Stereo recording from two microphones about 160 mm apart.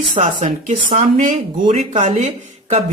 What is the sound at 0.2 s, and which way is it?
Speech, 50° right (ahead or behind).